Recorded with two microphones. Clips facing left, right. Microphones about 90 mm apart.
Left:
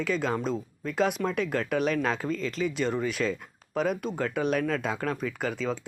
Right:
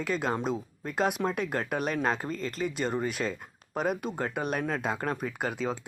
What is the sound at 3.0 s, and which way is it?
Speech, 45° right (ahead or behind).